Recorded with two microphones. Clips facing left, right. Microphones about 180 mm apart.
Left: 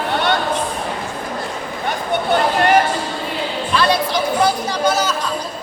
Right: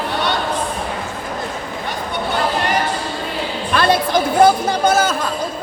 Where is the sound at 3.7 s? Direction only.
50° right (ahead or behind).